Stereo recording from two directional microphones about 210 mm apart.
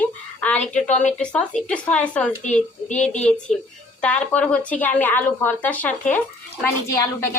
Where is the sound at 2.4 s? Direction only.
35° left (ahead or behind).